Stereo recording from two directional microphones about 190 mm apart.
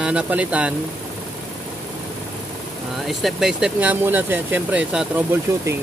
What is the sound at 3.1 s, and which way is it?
Speech, centre (ahead or behind).